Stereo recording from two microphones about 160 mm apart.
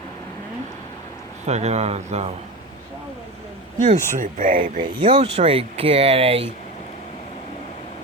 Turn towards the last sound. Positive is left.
turn(degrees=-35)  # may be behind; listen again after turning